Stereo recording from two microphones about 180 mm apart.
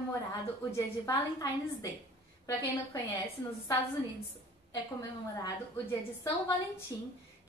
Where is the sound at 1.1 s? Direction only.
20° left (ahead or behind).